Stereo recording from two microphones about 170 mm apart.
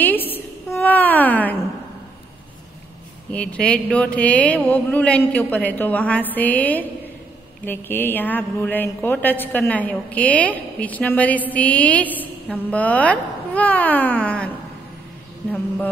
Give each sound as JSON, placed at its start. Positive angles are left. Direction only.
{"t": 0.0, "sound": "a sound", "side_deg": 10}
{"t": 0.7, "sound": "cat", "side_deg": 10}
{"t": 3.3, "sound": "mantra", "side_deg": 5}